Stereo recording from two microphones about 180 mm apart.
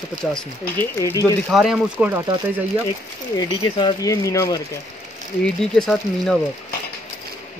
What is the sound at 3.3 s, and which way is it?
Speech, 25° left (ahead or behind).